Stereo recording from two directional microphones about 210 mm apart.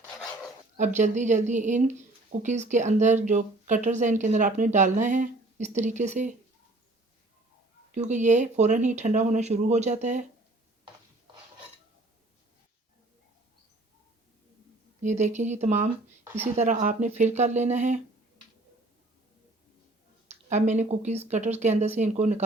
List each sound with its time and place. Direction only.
0.8 s speech: 35° right (ahead or behind)
7.9 s speech: 35° right (ahead or behind)
15.0 s speech: 35° right (ahead or behind)
16.2 s speech: 10° right (ahead or behind)
16.6 s speech: 35° right (ahead or behind)
20.5 s speech: 35° right (ahead or behind)